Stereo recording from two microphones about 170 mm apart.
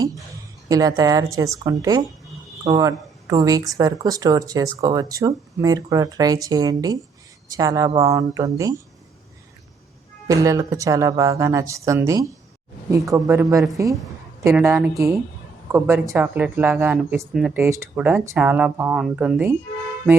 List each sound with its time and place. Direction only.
0.7 s speech: 20° right (ahead or behind)
10.2 s speech: 20° right (ahead or behind)